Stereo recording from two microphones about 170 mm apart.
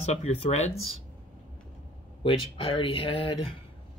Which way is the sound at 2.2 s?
30° left (ahead or behind).